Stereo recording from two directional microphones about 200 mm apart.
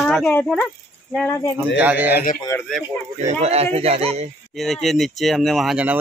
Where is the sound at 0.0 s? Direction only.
5° left (ahead or behind).